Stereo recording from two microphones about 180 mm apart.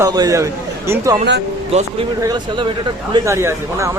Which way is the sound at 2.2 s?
25° right (ahead or behind).